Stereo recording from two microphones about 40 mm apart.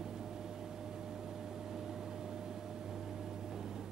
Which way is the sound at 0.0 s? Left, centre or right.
Centre.